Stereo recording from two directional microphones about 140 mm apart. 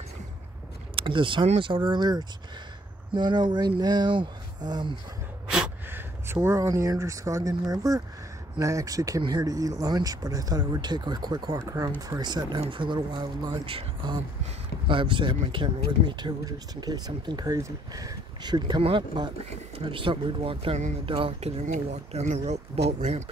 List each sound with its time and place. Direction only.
0.9 s speech: 35° right (ahead or behind)
5.5 s speech: 10° right (ahead or behind); by 23.2 s 55° right (ahead or behind)